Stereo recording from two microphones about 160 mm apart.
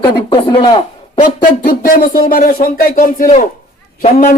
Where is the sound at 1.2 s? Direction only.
65° left (ahead or behind).